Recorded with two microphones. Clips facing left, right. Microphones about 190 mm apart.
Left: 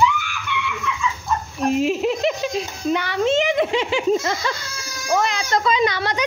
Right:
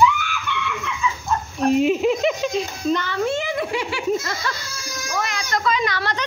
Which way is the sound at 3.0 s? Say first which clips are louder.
Left 4 dB; 15° left (ahead or behind).